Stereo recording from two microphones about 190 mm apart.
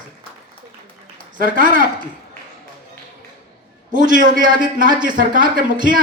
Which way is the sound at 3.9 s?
45° right (ahead or behind).